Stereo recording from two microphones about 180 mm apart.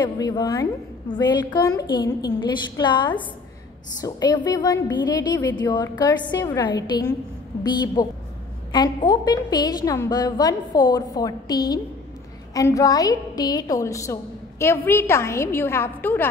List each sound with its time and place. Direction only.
0.0 s a woman's voice: 25° left (ahead or behind)